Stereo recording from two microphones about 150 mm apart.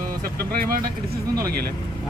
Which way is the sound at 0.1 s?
75° right (ahead or behind).